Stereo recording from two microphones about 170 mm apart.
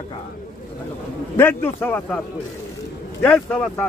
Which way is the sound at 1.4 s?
10° left (ahead or behind).